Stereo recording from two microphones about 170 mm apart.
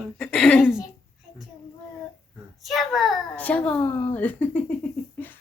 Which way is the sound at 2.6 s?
Centre (ahead or behind).